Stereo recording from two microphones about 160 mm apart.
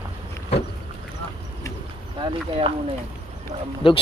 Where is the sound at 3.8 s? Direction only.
35° left (ahead or behind).